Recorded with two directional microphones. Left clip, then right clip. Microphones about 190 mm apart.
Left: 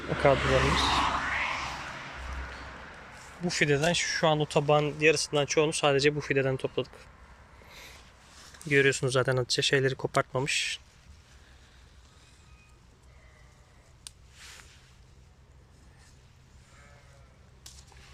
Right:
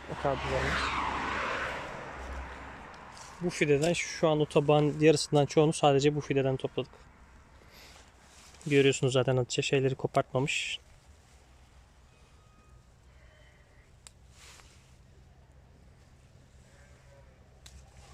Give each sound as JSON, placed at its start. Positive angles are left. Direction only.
{"t": 0.3, "sound": "speech", "side_deg": 60}
{"t": 0.8, "sound": "speech", "side_deg": 10}
{"t": 1.2, "sound": "a sound", "side_deg": -60}
{"t": 3.4, "sound": "speech", "side_deg": -5}
{"t": 8.7, "sound": "speech", "side_deg": -10}